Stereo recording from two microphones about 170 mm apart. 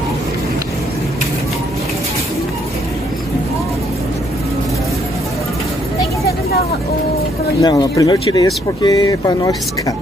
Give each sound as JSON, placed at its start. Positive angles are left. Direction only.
{"t": 7.6, "sound": "speech", "side_deg": 25}